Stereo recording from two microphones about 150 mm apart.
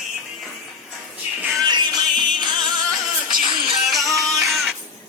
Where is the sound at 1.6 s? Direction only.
25° right (ahead or behind).